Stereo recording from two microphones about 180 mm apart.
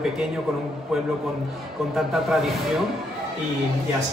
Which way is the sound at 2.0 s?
Centre (ahead or behind).